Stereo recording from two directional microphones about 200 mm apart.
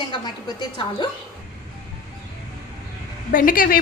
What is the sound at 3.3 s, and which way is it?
Speech, 45° left (ahead or behind).